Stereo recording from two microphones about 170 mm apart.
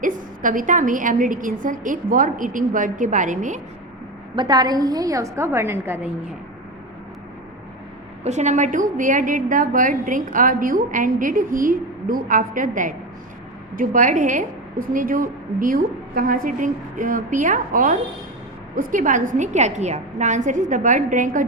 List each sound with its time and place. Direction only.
0.0 s a woman's voice: 50° right (ahead or behind)
4.4 s a woman's voice: 25° right (ahead or behind)
8.2 s a woman's voice: 40° right (ahead or behind)